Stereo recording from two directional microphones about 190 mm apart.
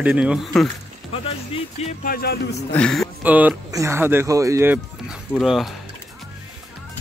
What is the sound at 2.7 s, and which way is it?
Speech, 5° left (ahead or behind).